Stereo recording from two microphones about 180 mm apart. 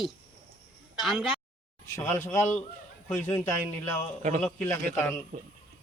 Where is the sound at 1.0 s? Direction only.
Centre (ahead or behind).